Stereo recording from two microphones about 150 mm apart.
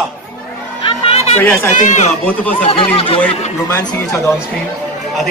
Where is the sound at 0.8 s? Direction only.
40° left (ahead or behind).